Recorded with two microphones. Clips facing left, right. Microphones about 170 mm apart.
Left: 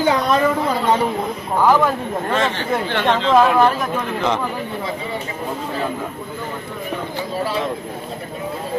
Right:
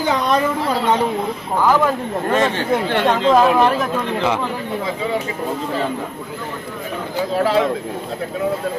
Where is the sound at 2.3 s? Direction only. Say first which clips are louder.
Right 3 dB; 45° right (ahead or behind).